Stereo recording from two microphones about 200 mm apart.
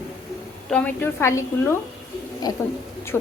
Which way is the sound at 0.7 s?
5° left (ahead or behind).